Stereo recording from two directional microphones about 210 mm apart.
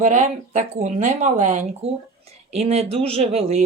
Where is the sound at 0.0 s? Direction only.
35° right (ahead or behind).